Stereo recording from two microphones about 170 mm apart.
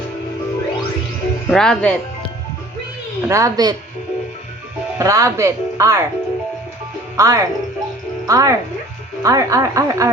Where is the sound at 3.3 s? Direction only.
20° right (ahead or behind).